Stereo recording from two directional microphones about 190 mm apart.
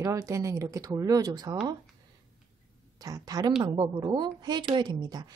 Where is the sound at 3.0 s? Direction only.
20° right (ahead or behind).